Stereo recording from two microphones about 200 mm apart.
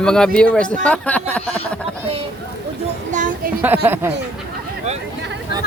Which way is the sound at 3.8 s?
10° right (ahead or behind).